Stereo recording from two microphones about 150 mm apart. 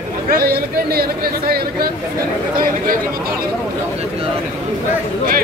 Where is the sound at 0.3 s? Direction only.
90° right; by 3.4 s 75° right (ahead or behind).